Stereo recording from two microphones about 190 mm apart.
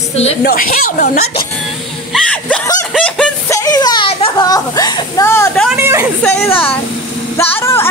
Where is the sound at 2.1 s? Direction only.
5° left (ahead or behind).